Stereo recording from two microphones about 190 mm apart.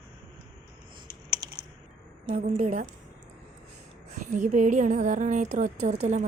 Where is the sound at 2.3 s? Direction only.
40° right (ahead or behind).